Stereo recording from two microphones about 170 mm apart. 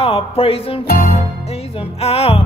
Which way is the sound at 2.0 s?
35° left (ahead or behind).